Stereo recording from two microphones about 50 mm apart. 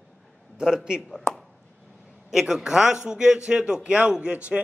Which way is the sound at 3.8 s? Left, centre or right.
Right.